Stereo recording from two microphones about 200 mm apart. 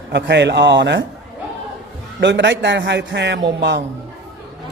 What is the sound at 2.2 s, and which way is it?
A man's voice, 60° right (ahead or behind).